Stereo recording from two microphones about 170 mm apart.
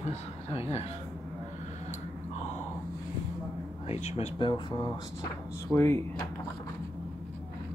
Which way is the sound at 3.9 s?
35° left (ahead or behind).